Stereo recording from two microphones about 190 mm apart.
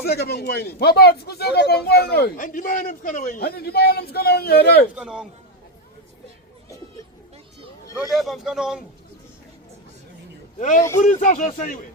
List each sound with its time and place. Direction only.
0.0 s speech: 55° left (ahead or behind)
4.9 s speech: 5° right (ahead or behind)
8.1 s speech: centre (ahead or behind)
10.6 s a man's voice: 40° left (ahead or behind)